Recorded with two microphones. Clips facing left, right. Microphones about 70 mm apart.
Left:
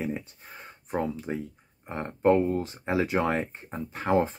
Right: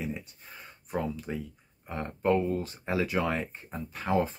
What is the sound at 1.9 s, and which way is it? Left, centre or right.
Speech, left.